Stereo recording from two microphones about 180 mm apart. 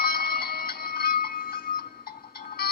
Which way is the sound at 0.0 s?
60° left (ahead or behind).